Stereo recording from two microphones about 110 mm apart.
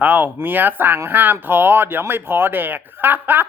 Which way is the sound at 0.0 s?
15° right (ahead or behind).